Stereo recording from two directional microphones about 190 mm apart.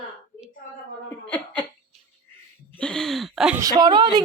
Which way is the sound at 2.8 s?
5° left (ahead or behind).